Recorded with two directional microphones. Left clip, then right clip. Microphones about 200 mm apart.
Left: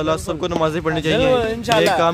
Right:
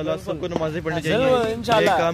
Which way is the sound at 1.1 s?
Centre (ahead or behind).